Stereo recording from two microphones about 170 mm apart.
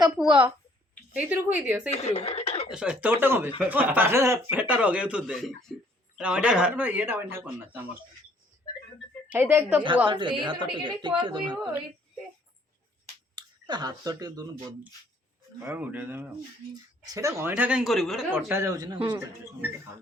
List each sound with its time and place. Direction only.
1.1 s speech: 10° right (ahead or behind)
1.9 s speech: 40° left (ahead or behind)
2.7 s speech: 5° right (ahead or behind)
9.3 s speech: 10° right (ahead or behind)
10.1 s a woman's voice: 30° right (ahead or behind)
13.3 s speech: 25° right (ahead or behind)
15.6 s speech: 10° right (ahead or behind)
17.5 s speech: 5° right (ahead or behind)
18.3 s a woman's voice: 15° right (ahead or behind)